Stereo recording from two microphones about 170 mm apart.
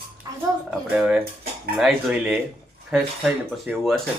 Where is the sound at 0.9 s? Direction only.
5° right (ahead or behind).